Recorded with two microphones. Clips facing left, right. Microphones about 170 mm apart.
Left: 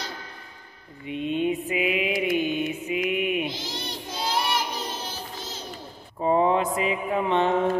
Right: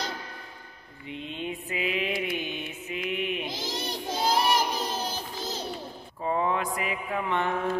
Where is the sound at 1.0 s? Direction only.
15° left (ahead or behind).